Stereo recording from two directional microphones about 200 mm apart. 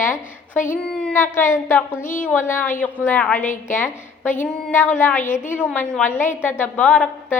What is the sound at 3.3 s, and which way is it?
Speech, 40° left (ahead or behind).